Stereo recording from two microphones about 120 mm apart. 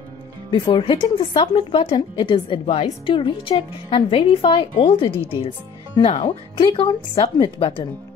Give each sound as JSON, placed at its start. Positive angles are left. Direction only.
{"t": 0.5, "sound": "a woman's voice", "side_deg": 40}
{"t": 1.7, "sound": "a woman's voice", "side_deg": 50}